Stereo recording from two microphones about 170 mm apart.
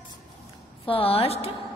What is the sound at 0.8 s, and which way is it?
Speech, 35° left (ahead or behind).